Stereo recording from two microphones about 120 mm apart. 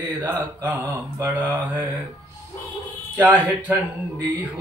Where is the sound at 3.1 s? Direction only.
15° right (ahead or behind).